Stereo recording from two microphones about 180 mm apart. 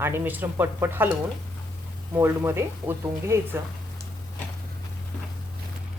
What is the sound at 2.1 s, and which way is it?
Speech, 15° right (ahead or behind).